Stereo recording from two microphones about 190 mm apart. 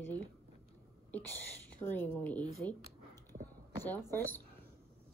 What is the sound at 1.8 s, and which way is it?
Speech, 10° left (ahead or behind).